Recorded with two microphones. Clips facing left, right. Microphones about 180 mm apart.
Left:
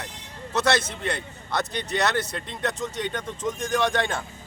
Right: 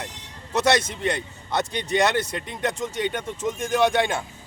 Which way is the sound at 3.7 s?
10° right (ahead or behind).